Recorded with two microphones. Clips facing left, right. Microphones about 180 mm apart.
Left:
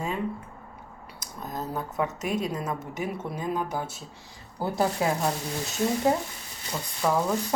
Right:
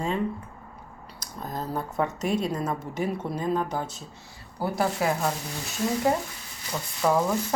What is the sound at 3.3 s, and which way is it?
Speech, 10° left (ahead or behind).